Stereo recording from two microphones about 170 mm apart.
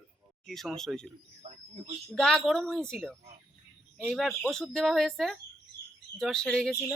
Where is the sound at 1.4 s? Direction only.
35° right (ahead or behind).